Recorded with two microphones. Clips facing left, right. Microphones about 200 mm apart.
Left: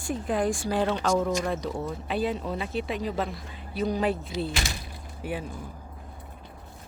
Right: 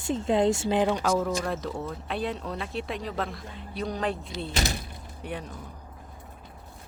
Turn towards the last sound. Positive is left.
turn(degrees=5)  # may be behind; listen again after turning